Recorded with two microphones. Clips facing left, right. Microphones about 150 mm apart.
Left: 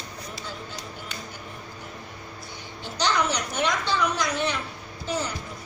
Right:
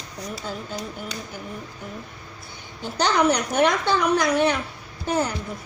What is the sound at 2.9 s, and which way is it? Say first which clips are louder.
A woman's voice: right 5 dB; 55° right (ahead or behind).